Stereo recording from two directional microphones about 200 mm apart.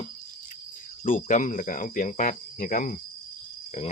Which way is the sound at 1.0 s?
40° left (ahead or behind).